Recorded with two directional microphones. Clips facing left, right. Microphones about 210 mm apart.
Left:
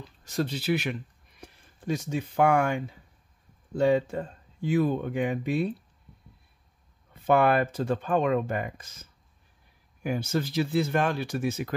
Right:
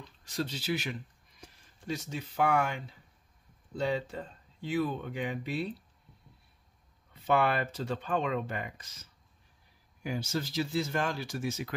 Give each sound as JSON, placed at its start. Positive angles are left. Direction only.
{"t": 0.2, "sound": "speech", "side_deg": 50}
{"t": 7.2, "sound": "speech", "side_deg": 50}
{"t": 10.0, "sound": "speech", "side_deg": 55}